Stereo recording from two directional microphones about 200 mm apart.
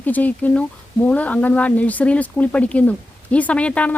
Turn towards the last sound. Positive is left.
turn(degrees=5)  # may be behind; listen again after turning